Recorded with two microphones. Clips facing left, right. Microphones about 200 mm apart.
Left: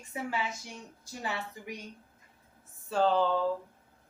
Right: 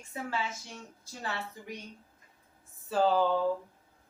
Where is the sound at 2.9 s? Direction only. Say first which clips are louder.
Even; 5° right (ahead or behind).